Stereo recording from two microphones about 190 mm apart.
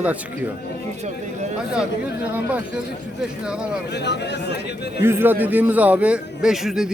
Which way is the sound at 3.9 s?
65° left (ahead or behind).